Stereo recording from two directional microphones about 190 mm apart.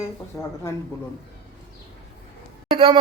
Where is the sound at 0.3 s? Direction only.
15° left (ahead or behind).